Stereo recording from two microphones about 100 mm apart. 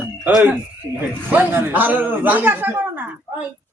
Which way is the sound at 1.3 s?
20° right (ahead or behind).